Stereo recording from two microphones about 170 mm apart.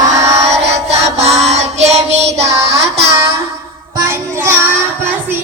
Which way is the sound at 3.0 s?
15° right (ahead or behind).